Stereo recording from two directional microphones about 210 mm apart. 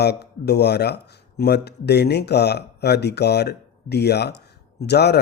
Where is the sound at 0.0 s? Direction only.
50° left (ahead or behind).